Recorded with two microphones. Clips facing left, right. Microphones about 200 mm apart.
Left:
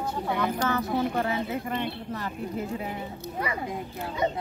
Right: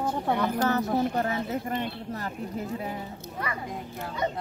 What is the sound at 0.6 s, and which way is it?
Speech, 40° right (ahead or behind).